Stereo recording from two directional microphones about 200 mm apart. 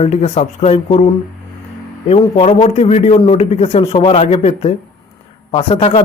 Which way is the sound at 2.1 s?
30° left (ahead or behind).